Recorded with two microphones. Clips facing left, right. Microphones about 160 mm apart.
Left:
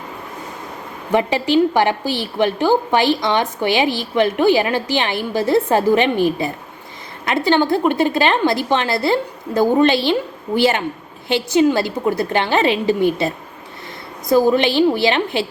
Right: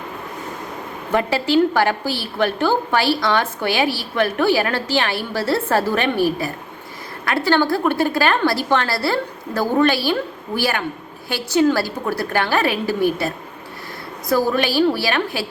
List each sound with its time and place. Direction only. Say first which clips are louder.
1.1 s a woman's voice: left 2 dB; 15° left (ahead or behind)